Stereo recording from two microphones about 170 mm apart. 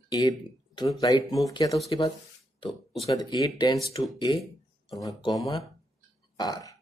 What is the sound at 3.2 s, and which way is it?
Speech, 25° left (ahead or behind).